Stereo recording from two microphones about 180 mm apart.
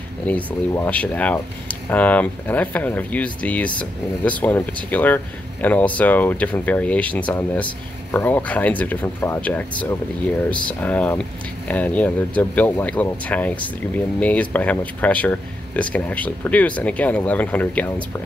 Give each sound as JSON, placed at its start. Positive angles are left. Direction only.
{"t": 0.2, "sound": "speech", "side_deg": 10}